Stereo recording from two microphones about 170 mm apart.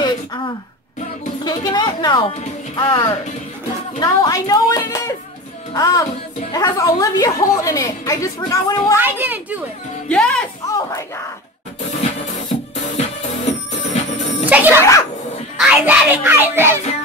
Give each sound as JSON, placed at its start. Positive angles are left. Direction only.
{"t": 1.4, "sound": "a woman's voice", "side_deg": 25}
{"t": 8.9, "sound": "speech", "side_deg": -10}
{"t": 10.0, "sound": "speech", "side_deg": 5}
{"t": 10.7, "sound": "a woman's voice", "side_deg": 20}
{"t": 13.5, "sound": "music", "side_deg": 45}
{"t": 14.4, "sound": "speech", "side_deg": -10}
{"t": 14.8, "sound": "a child's voice", "side_deg": 20}
{"t": 15.5, "sound": "music", "side_deg": -5}